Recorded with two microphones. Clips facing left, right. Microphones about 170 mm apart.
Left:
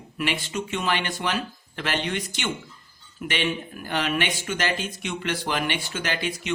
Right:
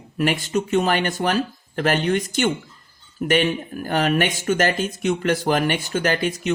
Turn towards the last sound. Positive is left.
turn(degrees=-45)  # may be behind; listen again after turning